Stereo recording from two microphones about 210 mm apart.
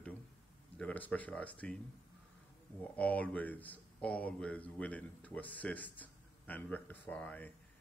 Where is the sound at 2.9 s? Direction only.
5° left (ahead or behind).